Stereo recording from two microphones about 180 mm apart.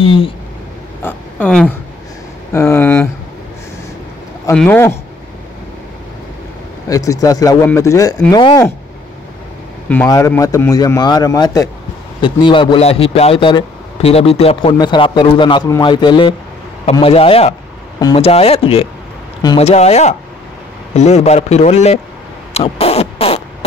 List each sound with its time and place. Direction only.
0.0 s a sound: 30° left (ahead or behind)
1.0 s speech: 5° left (ahead or behind)
4.6 s speech: 10° left (ahead or behind)
6.9 s a man's voice: 20° left (ahead or behind)
10.0 s a man's voice: 15° left (ahead or behind); by 17.6 s 35° left (ahead or behind)
17.9 s speech: 20° left (ahead or behind)
18.2 s a man's voice: 35° left (ahead or behind)
22.5 s a sound: 35° left (ahead or behind)